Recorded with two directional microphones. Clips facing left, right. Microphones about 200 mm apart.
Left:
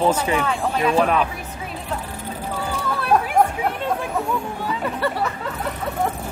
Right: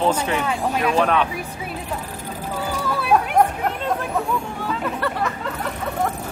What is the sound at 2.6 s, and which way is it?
Music, 5° right (ahead or behind).